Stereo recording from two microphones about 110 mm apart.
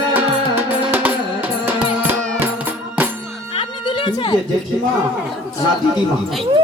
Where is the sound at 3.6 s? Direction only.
50° left (ahead or behind).